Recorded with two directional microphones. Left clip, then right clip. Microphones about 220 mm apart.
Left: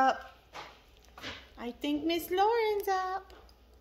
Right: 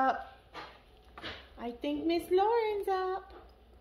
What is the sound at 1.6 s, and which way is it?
A woman's voice, 45° left (ahead or behind).